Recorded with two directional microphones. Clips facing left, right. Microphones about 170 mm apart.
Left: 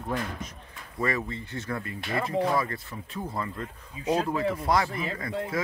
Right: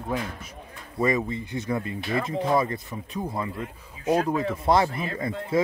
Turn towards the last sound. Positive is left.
turn(degrees=-25)  # may be behind; listen again after turning